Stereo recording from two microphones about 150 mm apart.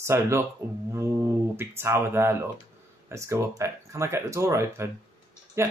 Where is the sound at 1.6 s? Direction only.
15° right (ahead or behind).